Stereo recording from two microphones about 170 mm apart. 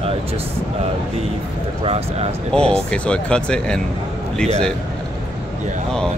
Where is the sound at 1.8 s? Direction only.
35° right (ahead or behind).